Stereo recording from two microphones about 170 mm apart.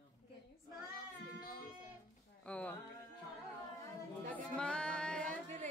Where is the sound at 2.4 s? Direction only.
5° left (ahead or behind).